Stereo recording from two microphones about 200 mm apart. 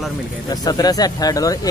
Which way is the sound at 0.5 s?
20° left (ahead or behind).